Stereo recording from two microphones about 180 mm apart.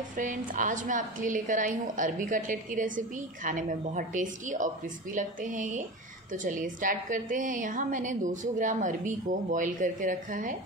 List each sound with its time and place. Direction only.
0.1 s a woman's voice: 45° right (ahead or behind)